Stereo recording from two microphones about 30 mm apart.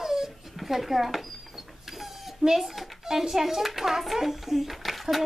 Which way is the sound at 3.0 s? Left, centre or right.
Centre.